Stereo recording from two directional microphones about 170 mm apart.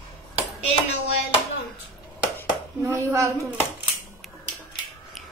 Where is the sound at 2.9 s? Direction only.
15° right (ahead or behind).